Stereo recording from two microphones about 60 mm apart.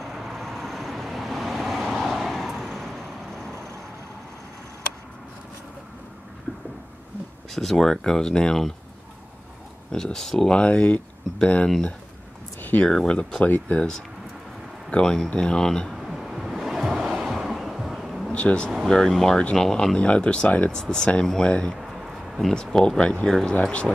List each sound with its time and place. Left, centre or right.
0.0 s vehicle: centre
7.5 s speech: centre
9.8 s speech: centre
10.6 s speech: left
12.8 s speech: centre
13.4 s speech: left
16.0 s waves: centre
18.3 s speech: centre
18.9 s speech: centre
21.7 s a sound: centre
22.5 s speech: centre